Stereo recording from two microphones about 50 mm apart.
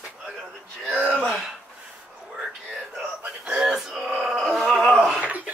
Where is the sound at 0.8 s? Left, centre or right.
Right.